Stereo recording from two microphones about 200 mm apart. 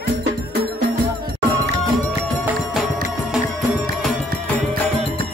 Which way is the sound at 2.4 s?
5° right (ahead or behind).